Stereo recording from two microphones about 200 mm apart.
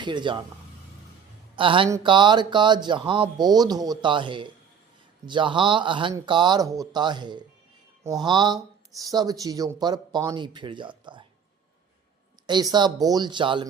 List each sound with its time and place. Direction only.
0.0 s speech: 25° right (ahead or behind)
1.5 s speech: 25° right (ahead or behind)
12.5 s speech: 20° right (ahead or behind)